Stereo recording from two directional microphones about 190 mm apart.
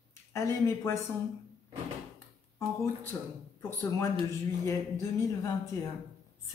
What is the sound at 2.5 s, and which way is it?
Speech, 15° left (ahead or behind).